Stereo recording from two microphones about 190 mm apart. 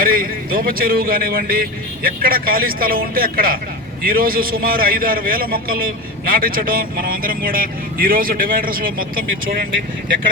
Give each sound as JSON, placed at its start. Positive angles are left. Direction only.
{"t": 0.0, "sound": "a man's voice", "side_deg": -50}